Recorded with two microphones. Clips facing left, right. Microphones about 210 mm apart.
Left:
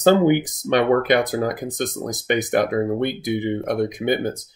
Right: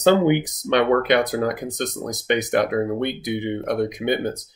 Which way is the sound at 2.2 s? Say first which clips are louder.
Even; 50° left (ahead or behind).